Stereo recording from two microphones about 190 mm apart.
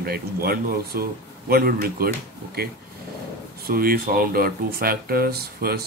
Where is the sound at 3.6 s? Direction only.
50° right (ahead or behind).